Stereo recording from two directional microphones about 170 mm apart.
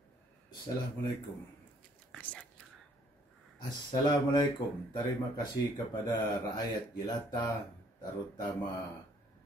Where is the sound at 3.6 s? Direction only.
25° left (ahead or behind).